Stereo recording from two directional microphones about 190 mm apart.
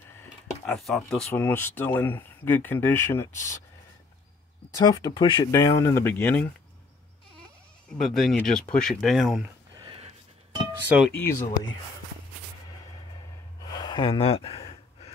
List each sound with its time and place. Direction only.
0.7 s speech: centre (ahead or behind)
4.7 s speech: 20° left (ahead or behind)
8.0 s speech: centre (ahead or behind)
9.8 s music: 30° right (ahead or behind)
11.1 s speech: 15° left (ahead or behind)
13.7 s speech: 25° left (ahead or behind)